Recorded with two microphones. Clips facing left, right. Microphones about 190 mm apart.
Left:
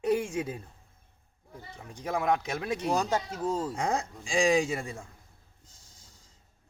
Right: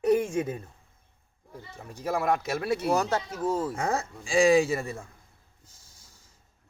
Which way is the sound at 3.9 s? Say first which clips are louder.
Right 3 dB; 5° right (ahead or behind).